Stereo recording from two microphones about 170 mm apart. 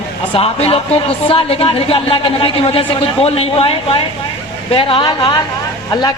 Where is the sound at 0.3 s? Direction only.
35° left (ahead or behind).